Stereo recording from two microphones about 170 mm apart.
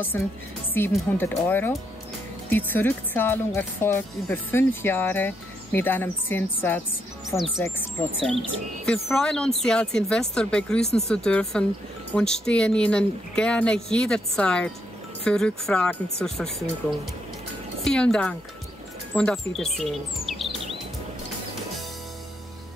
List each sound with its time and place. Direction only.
0.1 s speech: 10° left (ahead or behind)
8.2 s speech: centre (ahead or behind)
17.8 s speech: 5° left (ahead or behind)